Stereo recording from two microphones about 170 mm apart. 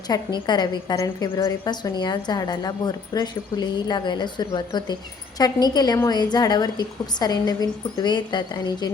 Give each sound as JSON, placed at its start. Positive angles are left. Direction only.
{"t": 0.1, "sound": "a woman's voice", "side_deg": 25}